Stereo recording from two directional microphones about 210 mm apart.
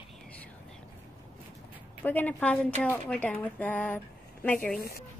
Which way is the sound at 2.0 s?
10° left (ahead or behind).